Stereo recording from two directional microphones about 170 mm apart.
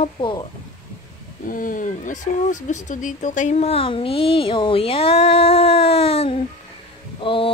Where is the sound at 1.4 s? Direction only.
55° left (ahead or behind).